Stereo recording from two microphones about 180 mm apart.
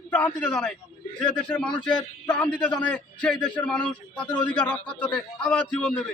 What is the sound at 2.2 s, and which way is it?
A man's voice, 5° left (ahead or behind).